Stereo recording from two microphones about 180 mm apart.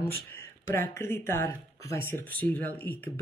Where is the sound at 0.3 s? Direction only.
15° left (ahead or behind).